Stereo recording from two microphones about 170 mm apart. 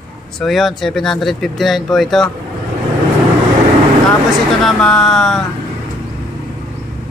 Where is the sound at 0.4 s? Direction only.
Centre (ahead or behind).